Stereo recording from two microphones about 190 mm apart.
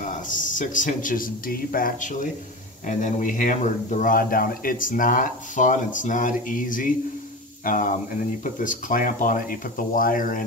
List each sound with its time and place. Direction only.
0.0 s speech: 45° left (ahead or behind)